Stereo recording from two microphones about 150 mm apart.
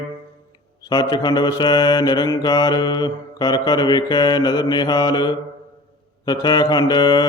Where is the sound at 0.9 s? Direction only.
25° left (ahead or behind).